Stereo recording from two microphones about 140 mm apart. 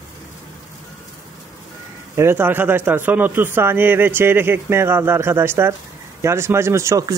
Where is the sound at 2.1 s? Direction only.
15° right (ahead or behind).